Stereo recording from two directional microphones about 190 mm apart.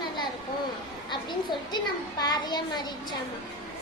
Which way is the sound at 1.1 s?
25° left (ahead or behind).